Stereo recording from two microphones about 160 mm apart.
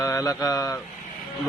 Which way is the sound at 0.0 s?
20° left (ahead or behind).